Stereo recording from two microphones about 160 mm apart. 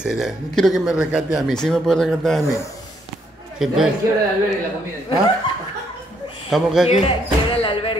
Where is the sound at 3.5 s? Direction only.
5° right (ahead or behind).